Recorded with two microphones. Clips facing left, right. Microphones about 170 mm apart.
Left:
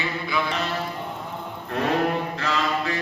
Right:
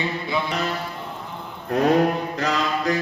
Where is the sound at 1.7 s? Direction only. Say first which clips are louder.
Right 5 dB; 40° right (ahead or behind).